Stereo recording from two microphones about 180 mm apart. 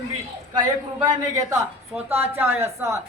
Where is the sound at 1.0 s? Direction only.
20° right (ahead or behind).